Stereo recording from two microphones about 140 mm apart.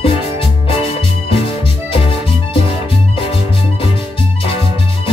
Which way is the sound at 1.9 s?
40° left (ahead or behind).